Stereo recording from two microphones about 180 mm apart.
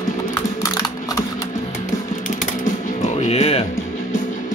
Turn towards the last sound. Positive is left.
turn(degrees=35)  # may be behind; listen again after turning